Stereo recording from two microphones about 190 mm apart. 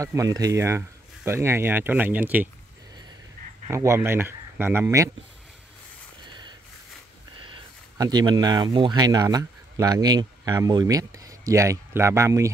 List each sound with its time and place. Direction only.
0.0 s speech: 15° right (ahead or behind)
3.6 s speech: 15° right (ahead or behind)
7.4 s speech: 25° right (ahead or behind)